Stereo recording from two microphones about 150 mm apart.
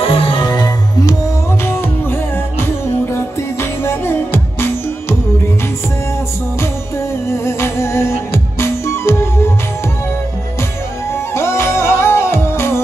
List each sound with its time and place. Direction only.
0.0 s music: 35° left (ahead or behind)
1.7 s music: 15° left (ahead or behind)
7.2 s music: 20° left (ahead or behind)
11.3 s music: 15° left (ahead or behind)